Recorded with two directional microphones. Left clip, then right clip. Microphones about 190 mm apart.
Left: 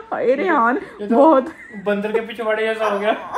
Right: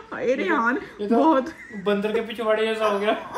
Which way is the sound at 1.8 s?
25° right (ahead or behind).